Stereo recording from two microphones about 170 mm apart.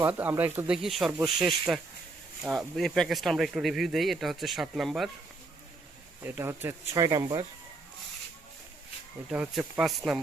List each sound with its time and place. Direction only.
0.0 s speech: 10° right (ahead or behind)
6.2 s speech: 15° right (ahead or behind)
9.3 s speech: 5° right (ahead or behind)